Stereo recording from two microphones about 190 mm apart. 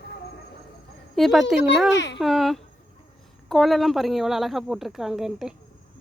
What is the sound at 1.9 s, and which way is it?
Speech, 70° left (ahead or behind).